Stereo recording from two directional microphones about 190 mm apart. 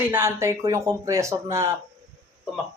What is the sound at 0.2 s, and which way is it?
Speech, 15° right (ahead or behind).